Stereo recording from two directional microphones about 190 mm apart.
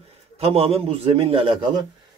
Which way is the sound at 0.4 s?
30° right (ahead or behind).